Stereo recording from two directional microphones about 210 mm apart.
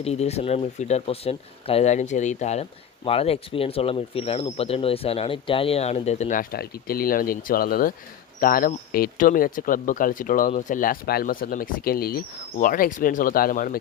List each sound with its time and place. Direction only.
0.0 s speech: 30° left (ahead or behind)